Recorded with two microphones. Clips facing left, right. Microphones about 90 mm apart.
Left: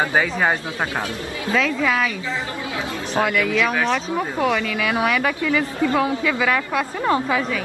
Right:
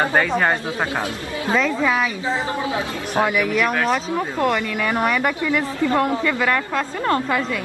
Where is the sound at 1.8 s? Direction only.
15° right (ahead or behind).